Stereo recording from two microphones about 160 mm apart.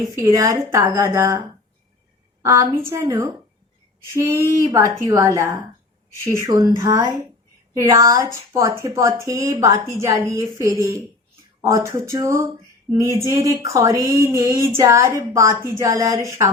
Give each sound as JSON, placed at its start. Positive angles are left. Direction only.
{"t": 0.2, "sound": "a woman's voice", "side_deg": -20}
{"t": 2.4, "sound": "a woman's voice", "side_deg": -20}